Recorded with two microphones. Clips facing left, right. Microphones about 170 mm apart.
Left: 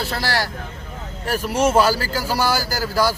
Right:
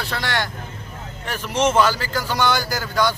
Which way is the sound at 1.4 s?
10° left (ahead or behind).